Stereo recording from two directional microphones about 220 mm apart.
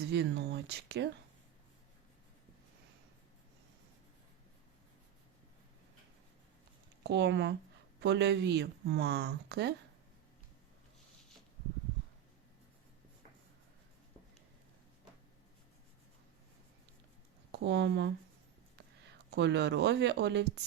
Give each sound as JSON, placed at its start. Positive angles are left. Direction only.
{"t": 0.0, "sound": "speech", "side_deg": -50}
{"t": 7.0, "sound": "speech", "side_deg": -50}
{"t": 17.5, "sound": "speech", "side_deg": -50}